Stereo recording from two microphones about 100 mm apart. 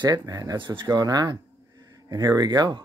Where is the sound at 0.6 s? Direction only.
50° right (ahead or behind).